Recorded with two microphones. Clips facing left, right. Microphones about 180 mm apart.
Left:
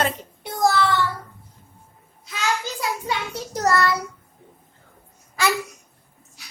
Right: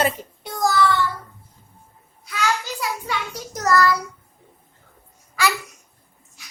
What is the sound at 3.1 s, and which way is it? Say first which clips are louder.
Child singing: left 1 dB; 30° left (ahead or behind).